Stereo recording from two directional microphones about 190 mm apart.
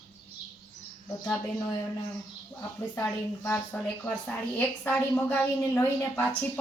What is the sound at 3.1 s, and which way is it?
A woman's voice, 10° left (ahead or behind).